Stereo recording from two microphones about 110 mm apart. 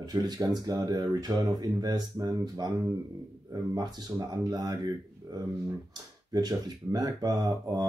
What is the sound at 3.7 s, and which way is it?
Speech, 40° right (ahead or behind).